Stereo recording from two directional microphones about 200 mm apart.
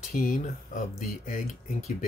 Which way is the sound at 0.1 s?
40° left (ahead or behind).